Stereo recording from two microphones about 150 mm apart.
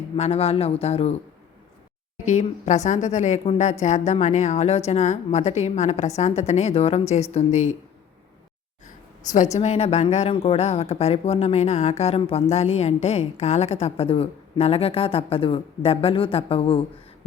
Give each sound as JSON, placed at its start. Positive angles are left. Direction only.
{"t": 0.2, "sound": "speech", "side_deg": 45}
{"t": 2.2, "sound": "speech", "side_deg": 50}
{"t": 9.3, "sound": "speech", "side_deg": 50}